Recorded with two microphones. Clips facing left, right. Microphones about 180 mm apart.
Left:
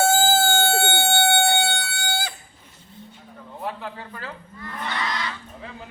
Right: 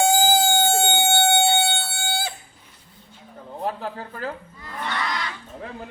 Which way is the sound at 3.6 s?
40° right (ahead or behind).